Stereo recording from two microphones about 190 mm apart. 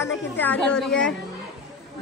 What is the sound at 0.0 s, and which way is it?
A woman's voice, 10° left (ahead or behind).